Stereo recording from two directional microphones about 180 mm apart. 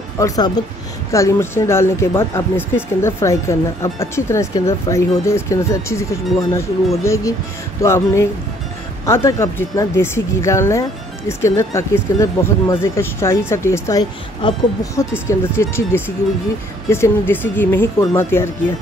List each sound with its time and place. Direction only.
0.2 s speech: 15° left (ahead or behind)
14.4 s speech: 25° left (ahead or behind)
15.0 s speech: 15° left (ahead or behind)